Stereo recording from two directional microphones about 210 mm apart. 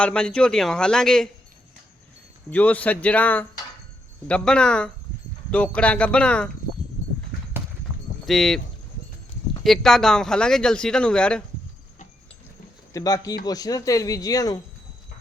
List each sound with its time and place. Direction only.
0.0 s speech: 5° left (ahead or behind)
2.5 s speech: 5° left (ahead or behind)
8.3 s speech: centre (ahead or behind)
9.6 s speech: centre (ahead or behind)
12.9 s speech: 15° left (ahead or behind)